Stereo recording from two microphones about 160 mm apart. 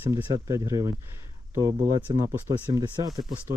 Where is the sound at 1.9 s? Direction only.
25° right (ahead or behind).